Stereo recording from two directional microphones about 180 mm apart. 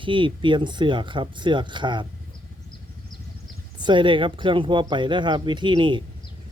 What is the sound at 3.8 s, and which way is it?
Speech, 25° right (ahead or behind).